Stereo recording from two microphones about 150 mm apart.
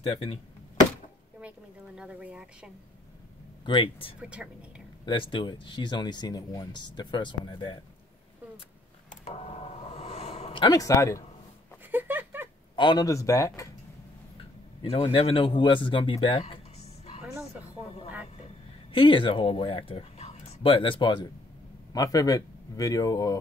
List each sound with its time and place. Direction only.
0.0 s speech: 35° left (ahead or behind)
1.4 s a sound: 10° right (ahead or behind)
2.0 s speech: 5° right (ahead or behind)
3.6 s speech: 35° left (ahead or behind)
4.2 s speech: 5° right (ahead or behind)
5.0 s speech: 35° left (ahead or behind)
9.1 s a sound: 45° left (ahead or behind); by 11.2 s 20° left (ahead or behind)
11.9 s a sound: 10° right (ahead or behind)
12.7 s speech: 30° left (ahead or behind)
14.8 s speech: 35° left (ahead or behind)
18.9 s speech: 35° left (ahead or behind)